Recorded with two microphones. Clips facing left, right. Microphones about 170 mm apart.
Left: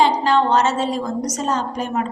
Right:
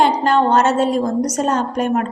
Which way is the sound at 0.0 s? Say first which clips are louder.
Right 2 dB; 55° right (ahead or behind).